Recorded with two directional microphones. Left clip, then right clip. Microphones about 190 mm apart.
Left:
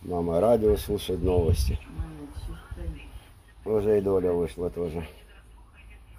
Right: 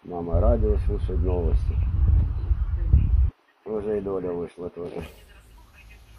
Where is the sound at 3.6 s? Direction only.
10° left (ahead or behind).